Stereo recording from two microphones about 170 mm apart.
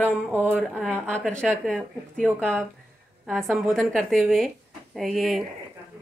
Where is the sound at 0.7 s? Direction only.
10° right (ahead or behind).